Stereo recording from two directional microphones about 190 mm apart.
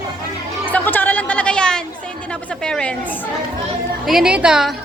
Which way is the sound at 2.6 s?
5° left (ahead or behind).